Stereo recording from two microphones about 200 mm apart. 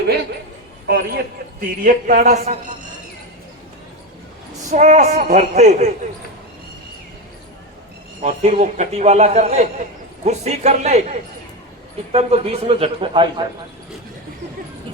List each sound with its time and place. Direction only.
0.9 s speech: 50° right (ahead or behind)
1.8 s a man's voice: 40° right (ahead or behind)
4.6 s a man's voice: 35° right (ahead or behind)
8.2 s a man's voice: 35° right (ahead or behind)